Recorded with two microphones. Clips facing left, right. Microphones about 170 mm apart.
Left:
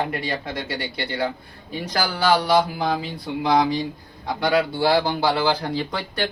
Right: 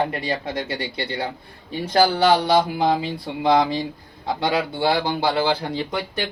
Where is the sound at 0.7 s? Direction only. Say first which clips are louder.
Right 1 dB; 30° right (ahead or behind).